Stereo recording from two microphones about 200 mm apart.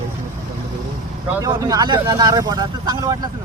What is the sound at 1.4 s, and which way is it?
Speech, 20° right (ahead or behind).